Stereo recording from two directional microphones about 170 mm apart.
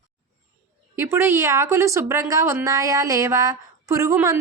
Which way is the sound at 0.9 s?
15° right (ahead or behind).